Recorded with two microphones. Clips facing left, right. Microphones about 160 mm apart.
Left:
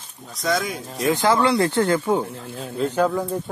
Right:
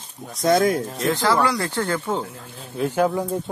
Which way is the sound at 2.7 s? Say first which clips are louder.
Even; 10° right (ahead or behind).